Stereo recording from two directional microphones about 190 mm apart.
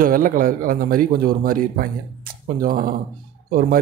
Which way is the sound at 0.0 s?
45° right (ahead or behind).